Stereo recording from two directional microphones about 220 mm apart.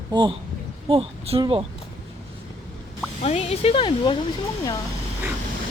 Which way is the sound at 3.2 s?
25° left (ahead or behind).